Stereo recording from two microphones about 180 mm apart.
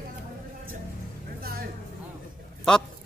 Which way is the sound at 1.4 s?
55° right (ahead or behind).